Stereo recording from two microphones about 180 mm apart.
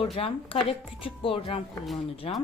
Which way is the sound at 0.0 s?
30° left (ahead or behind).